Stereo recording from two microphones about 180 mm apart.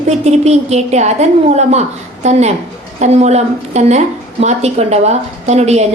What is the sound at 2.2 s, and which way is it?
A woman's voice, 40° right (ahead or behind).